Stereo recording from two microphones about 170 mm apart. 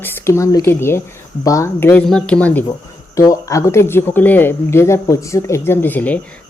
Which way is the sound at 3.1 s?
20° left (ahead or behind).